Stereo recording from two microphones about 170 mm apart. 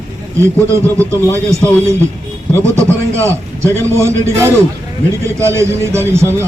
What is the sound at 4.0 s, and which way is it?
A man's voice, 15° right (ahead or behind).